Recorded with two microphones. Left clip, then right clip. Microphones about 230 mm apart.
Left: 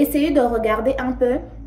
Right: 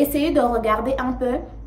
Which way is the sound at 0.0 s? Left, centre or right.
Right.